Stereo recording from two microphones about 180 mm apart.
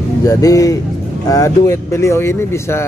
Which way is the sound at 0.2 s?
20° left (ahead or behind).